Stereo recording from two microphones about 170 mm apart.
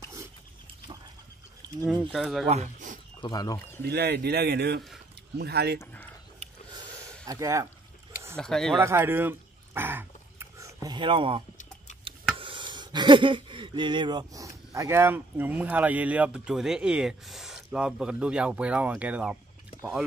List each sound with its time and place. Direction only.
1.6 s a sound: 25° right (ahead or behind)
2.1 s speech: centre (ahead or behind)
2.4 s speech: 40° right (ahead or behind)
3.2 s speech: 20° left (ahead or behind)
3.8 s speech: 75° right (ahead or behind)
7.2 s speech: 20° right (ahead or behind)
8.4 s speech: 5° left (ahead or behind)
8.7 s a sound: 15° right (ahead or behind); by 11.4 s 30° right (ahead or behind)
12.4 s speech: 30° right (ahead or behind); by 19.3 s 5° right (ahead or behind)